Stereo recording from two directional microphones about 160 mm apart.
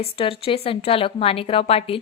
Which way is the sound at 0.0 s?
35° left (ahead or behind).